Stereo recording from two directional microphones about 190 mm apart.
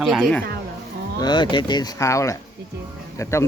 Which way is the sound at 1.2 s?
20° left (ahead or behind).